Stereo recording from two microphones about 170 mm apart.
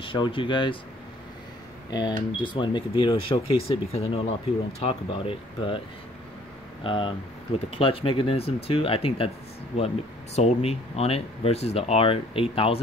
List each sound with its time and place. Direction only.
0.0 s speech: 30° left (ahead or behind)
1.9 s speech: 25° left (ahead or behind)
6.8 s speech: 30° left (ahead or behind)
10.3 s speech: 40° left (ahead or behind)